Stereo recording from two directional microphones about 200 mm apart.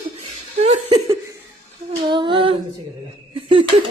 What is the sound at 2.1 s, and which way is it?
Female singing, 25° right (ahead or behind).